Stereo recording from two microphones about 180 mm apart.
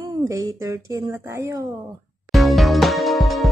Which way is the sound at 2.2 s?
Centre (ahead or behind).